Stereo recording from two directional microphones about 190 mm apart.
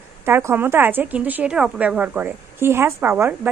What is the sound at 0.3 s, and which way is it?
Speech, 10° right (ahead or behind).